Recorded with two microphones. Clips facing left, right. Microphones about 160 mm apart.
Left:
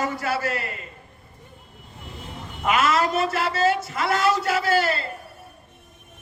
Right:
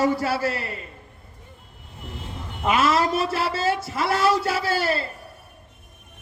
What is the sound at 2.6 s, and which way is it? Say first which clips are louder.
A man's voice: right 1 dB; 30° right (ahead or behind).